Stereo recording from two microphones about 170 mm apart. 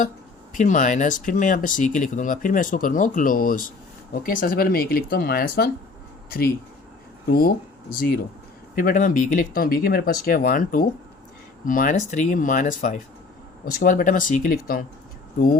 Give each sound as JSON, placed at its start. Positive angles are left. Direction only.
{"t": 0.5, "sound": "speech", "side_deg": 45}